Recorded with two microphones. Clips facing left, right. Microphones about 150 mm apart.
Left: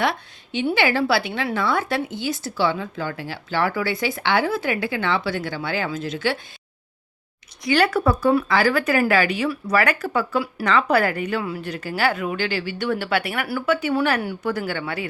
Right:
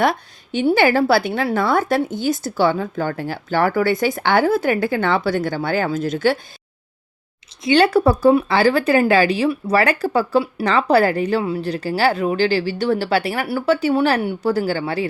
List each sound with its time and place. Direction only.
0.0 s a woman's voice: 45° right (ahead or behind)
7.6 s a woman's voice: 25° right (ahead or behind)